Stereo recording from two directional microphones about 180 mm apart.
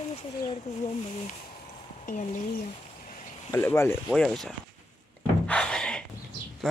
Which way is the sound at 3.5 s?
15° left (ahead or behind).